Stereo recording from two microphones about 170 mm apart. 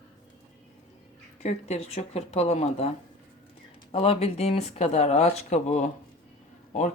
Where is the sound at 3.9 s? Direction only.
35° left (ahead or behind).